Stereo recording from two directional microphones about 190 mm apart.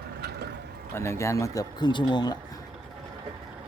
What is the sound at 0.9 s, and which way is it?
Speech, 15° left (ahead or behind).